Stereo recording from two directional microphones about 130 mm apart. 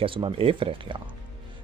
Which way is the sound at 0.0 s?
45° right (ahead or behind).